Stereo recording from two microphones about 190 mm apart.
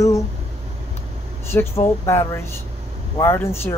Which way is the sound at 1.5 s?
15° left (ahead or behind).